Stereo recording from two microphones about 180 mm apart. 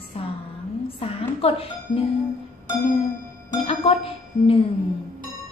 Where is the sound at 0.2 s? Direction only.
35° left (ahead or behind).